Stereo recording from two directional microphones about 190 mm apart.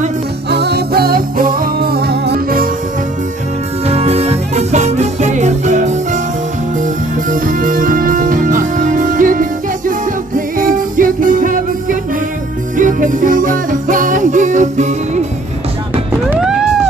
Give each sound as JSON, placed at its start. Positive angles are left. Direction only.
{"t": 0.5, "sound": "music", "side_deg": -60}
{"t": 3.8, "sound": "music", "side_deg": -35}
{"t": 7.2, "sound": "music", "side_deg": -45}
{"t": 16.3, "sound": "music", "side_deg": -5}